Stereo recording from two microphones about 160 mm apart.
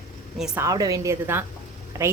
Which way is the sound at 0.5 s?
20° right (ahead or behind).